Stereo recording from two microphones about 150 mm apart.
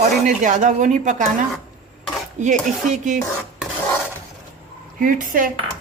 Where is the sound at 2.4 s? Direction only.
55° right (ahead or behind).